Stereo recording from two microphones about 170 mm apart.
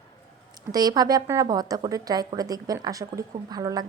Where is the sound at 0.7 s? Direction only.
20° right (ahead or behind).